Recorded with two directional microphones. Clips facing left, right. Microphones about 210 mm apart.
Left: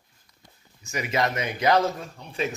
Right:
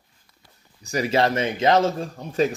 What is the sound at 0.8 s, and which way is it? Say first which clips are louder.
Speech: right 5 dB; 35° right (ahead or behind).